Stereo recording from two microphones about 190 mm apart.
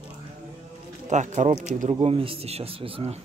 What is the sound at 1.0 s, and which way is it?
Speech, 40° right (ahead or behind).